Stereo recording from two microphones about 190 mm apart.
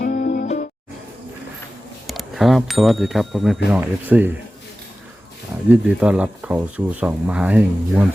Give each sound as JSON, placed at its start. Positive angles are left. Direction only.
{"t": 0.0, "sound": "music", "side_deg": 45}
{"t": 2.0, "sound": "speech", "side_deg": 0}
{"t": 5.6, "sound": "speech", "side_deg": -5}